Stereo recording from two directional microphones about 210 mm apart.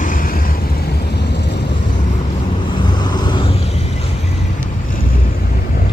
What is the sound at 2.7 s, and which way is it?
Vehicle, 20° left (ahead or behind).